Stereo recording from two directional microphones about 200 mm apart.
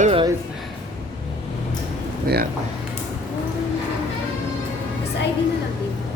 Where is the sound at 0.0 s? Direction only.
30° right (ahead or behind).